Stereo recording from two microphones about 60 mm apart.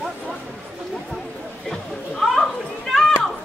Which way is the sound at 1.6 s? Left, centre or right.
Centre.